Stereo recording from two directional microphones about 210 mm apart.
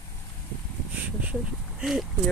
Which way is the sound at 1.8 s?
Centre (ahead or behind).